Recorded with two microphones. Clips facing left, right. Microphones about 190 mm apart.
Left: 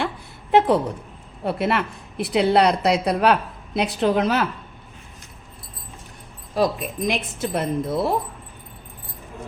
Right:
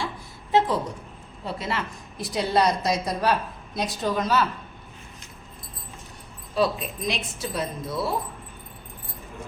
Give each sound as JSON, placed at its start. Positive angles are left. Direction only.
{"t": 0.5, "sound": "a woman's voice", "side_deg": 60}
{"t": 6.5, "sound": "speech", "side_deg": 45}